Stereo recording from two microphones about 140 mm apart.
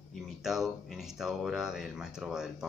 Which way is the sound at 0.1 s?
Centre (ahead or behind).